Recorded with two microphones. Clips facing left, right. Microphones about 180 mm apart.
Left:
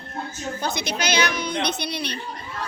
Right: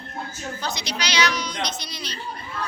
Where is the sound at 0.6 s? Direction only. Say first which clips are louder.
Left 4 dB; 55° left (ahead or behind).